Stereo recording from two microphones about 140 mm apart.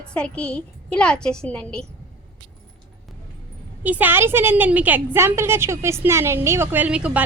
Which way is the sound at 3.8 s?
10° right (ahead or behind).